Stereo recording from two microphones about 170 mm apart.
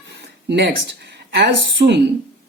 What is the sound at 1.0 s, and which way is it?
Speech, 75° right (ahead or behind).